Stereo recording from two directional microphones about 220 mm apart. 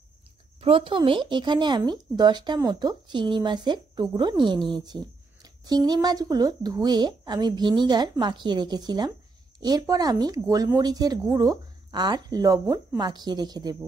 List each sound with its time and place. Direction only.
0.6 s speech: 25° right (ahead or behind)